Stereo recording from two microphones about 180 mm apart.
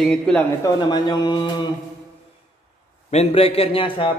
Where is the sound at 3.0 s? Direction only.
35° left (ahead or behind).